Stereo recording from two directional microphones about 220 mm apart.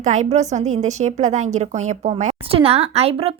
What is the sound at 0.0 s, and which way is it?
A woman's voice, 35° right (ahead or behind).